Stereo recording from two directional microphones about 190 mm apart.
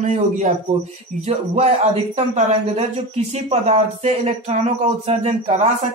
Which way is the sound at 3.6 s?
35° right (ahead or behind).